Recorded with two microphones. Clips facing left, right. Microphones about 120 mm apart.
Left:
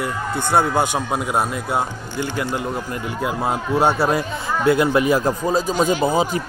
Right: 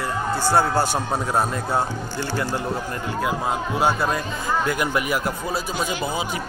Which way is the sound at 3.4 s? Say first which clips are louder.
Left 4 dB; 25° left (ahead or behind).